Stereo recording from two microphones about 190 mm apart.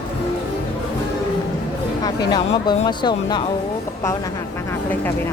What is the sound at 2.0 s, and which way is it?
Speech, 20° left (ahead or behind).